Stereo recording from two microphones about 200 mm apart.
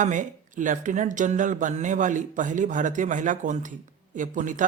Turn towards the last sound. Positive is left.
turn(degrees=-40)  # may be behind; listen again after turning